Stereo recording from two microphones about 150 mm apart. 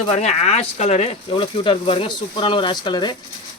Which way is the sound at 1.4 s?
35° left (ahead or behind).